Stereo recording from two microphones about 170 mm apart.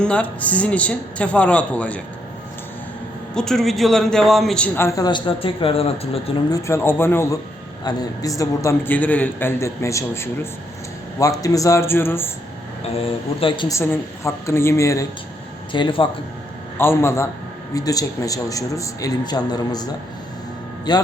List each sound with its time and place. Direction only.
0.0 s a man's voice: 5° left (ahead or behind)
3.3 s a man's voice: 5° left (ahead or behind); by 6.4 s 35° left (ahead or behind)
6.5 s a man's voice: 15° left (ahead or behind)
13.0 s speech: 30° left (ahead or behind)
13.7 s a man's voice: 15° left (ahead or behind)
15.7 s speech: 30° left (ahead or behind)
16.7 s a man's voice: 15° left (ahead or behind)